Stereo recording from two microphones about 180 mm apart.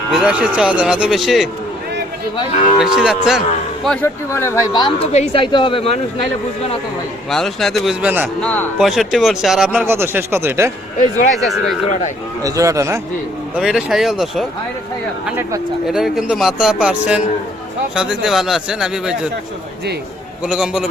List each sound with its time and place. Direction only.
0.1 s speech: 5° right (ahead or behind)
2.3 s speech: 30° left (ahead or behind)
2.8 s speech: 5° right (ahead or behind)
4.0 s speech: 15° left (ahead or behind)
5.1 s speech: 35° left (ahead or behind)
7.3 s speech: centre (ahead or behind)
8.4 s speech: 5° left (ahead or behind); by 10.7 s 10° right (ahead or behind)
11.3 s speech: centre (ahead or behind)
12.4 s speech: 20° right (ahead or behind)
13.6 s speech: 5° right (ahead or behind)
15.9 s speech: centre (ahead or behind)
20.4 s speech: 5° right (ahead or behind)